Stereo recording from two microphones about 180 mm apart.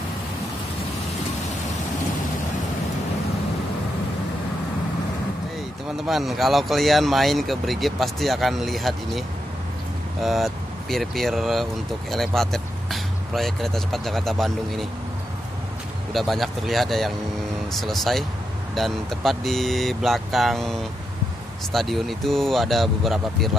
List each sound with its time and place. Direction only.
6.0 s speech: centre (ahead or behind)
10.2 s speech: centre (ahead or behind)
16.1 s speech: centre (ahead or behind)
21.7 s speech: centre (ahead or behind)